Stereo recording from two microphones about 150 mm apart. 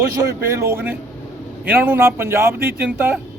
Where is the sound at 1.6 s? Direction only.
15° right (ahead or behind).